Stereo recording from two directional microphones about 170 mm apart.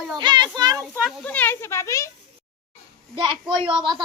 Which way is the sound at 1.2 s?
10° left (ahead or behind).